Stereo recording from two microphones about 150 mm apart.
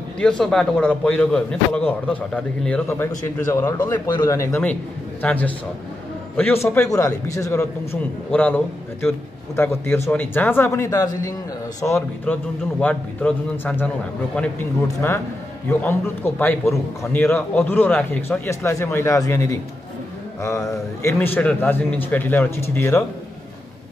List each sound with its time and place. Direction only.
0.2 s a man's voice: 5° left (ahead or behind)